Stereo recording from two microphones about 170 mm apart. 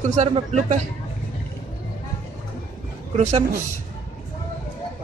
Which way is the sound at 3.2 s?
40° right (ahead or behind).